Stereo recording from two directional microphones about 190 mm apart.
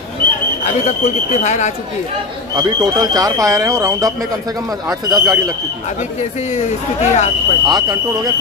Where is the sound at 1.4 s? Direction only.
40° left (ahead or behind).